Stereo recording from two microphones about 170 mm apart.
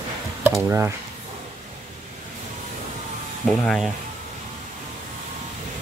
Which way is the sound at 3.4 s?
Centre (ahead or behind).